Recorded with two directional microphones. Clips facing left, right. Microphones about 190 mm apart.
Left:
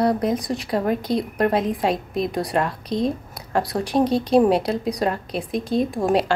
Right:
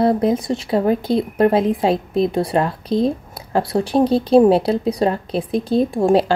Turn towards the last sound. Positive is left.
turn(degrees=-30)  # may be behind; listen again after turning